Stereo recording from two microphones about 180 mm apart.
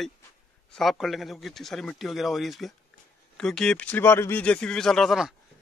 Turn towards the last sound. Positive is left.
turn(degrees=0)  # may be behind; listen again after turning